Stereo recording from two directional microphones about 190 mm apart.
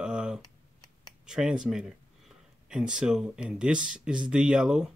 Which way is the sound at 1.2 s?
5° right (ahead or behind).